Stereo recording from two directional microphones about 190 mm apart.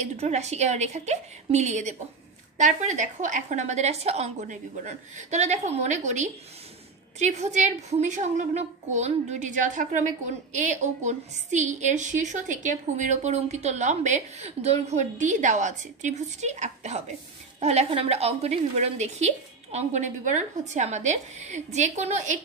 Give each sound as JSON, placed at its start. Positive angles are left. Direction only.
{"t": 0.0, "sound": "a woman's voice", "side_deg": -35}